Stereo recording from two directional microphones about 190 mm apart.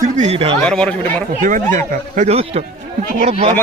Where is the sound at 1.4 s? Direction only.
45° right (ahead or behind).